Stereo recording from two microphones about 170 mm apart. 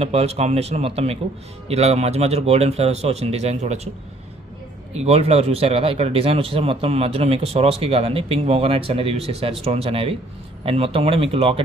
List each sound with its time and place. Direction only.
0.0 s speech: 35° right (ahead or behind)
4.9 s speech: 35° right (ahead or behind)